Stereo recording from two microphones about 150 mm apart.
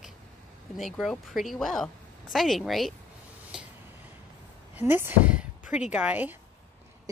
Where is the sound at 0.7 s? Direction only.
Centre (ahead or behind).